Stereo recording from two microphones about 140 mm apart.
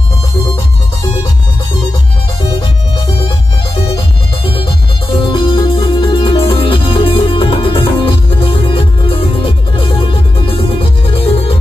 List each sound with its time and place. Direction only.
5.1 s music: 35° left (ahead or behind)